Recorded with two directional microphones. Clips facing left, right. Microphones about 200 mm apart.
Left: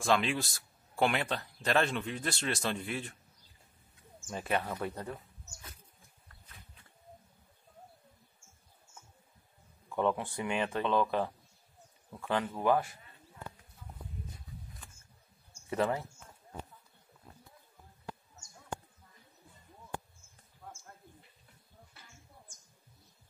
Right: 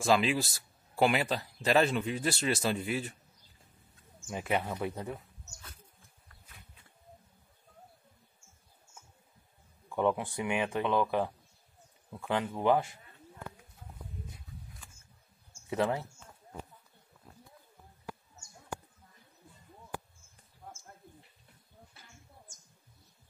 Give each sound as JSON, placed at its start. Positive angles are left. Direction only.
{"t": 0.0, "sound": "a man's voice", "side_deg": -5}
{"t": 4.3, "sound": "speech", "side_deg": -15}
{"t": 9.8, "sound": "speech", "side_deg": -15}
{"t": 15.7, "sound": "speech", "side_deg": -10}